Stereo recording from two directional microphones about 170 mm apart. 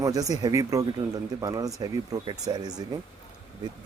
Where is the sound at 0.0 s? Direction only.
20° right (ahead or behind).